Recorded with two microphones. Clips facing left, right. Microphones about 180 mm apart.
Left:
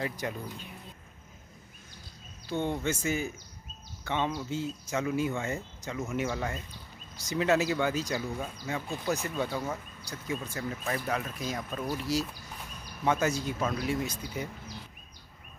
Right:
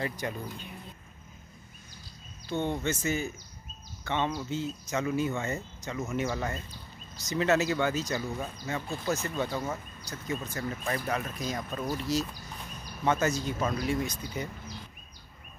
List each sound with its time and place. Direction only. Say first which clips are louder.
0.0 s speech: even; centre (ahead or behind)
2.5 s speech: even; 10° left (ahead or behind)